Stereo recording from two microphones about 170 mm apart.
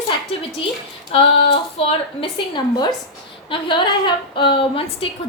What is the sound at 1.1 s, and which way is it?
A woman's voice, 35° left (ahead or behind).